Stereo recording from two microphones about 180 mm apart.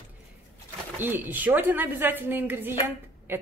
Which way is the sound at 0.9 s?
10° right (ahead or behind).